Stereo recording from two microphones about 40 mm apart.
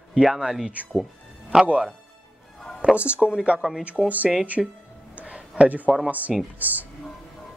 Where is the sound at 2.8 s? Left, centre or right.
Right.